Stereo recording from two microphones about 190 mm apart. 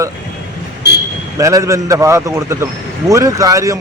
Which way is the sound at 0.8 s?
65° left (ahead or behind).